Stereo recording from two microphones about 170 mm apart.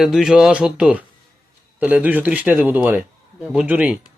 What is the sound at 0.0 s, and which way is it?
A man's voice, centre (ahead or behind).